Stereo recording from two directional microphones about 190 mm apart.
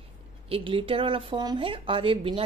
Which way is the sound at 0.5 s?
25° right (ahead or behind).